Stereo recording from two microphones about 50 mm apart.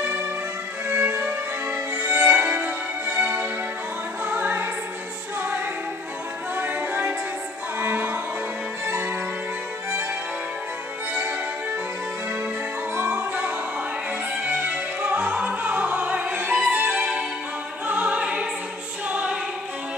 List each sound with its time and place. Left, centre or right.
0.8 s music: right
1.2 s music: right
2.0 s music: right
6.5 s music: right
12.9 s music: right
13.2 s music: right
14.3 s opera: right
16.5 s music: right
18.0 s music: right